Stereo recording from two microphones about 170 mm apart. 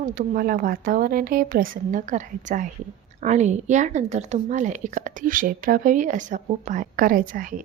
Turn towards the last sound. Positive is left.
turn(degrees=-55)  # may be behind; listen again after turning